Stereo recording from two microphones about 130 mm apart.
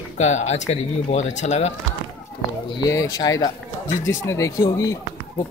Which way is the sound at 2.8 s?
25° left (ahead or behind).